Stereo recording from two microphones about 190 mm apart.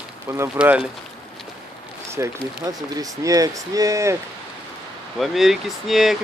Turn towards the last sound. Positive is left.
turn(degrees=0)  # may be behind; listen again after turning